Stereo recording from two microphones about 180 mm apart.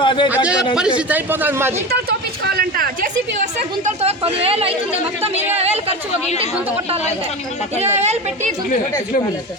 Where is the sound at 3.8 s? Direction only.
35° right (ahead or behind).